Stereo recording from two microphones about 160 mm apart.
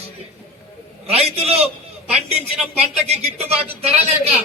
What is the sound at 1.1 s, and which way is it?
Speech, 40° right (ahead or behind).